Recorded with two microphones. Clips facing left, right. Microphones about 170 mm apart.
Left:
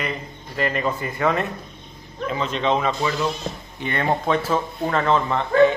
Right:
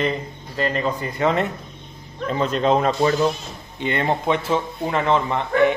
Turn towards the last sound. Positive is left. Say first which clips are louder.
# left 2 dB
turn(degrees=-20)  # may be behind; listen again after turning